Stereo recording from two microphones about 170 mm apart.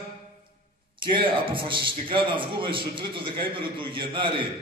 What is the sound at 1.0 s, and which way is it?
A man's voice, 30° right (ahead or behind).